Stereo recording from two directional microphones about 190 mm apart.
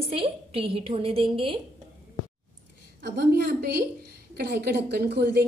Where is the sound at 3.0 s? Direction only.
55° right (ahead or behind).